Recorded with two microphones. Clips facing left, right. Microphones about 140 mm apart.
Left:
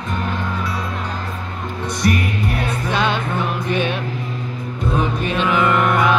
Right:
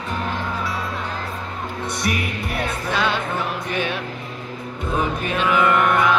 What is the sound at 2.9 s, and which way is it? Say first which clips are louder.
Music: left 2 dB; 20° left (ahead or behind).